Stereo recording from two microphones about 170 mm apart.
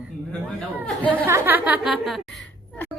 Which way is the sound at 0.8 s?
10° left (ahead or behind).